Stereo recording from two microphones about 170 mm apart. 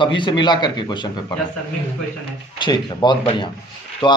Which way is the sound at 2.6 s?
25° left (ahead or behind).